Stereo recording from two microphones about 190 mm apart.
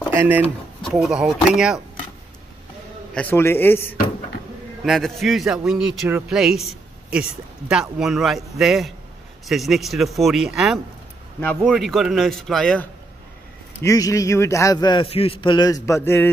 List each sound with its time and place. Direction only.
0.1 s speech: 10° right (ahead or behind)
1.0 s a man's voice: centre (ahead or behind)
3.2 s a man's voice: 10° left (ahead or behind)
4.8 s a man's voice: centre (ahead or behind)
13.8 s a man's voice: 15° left (ahead or behind)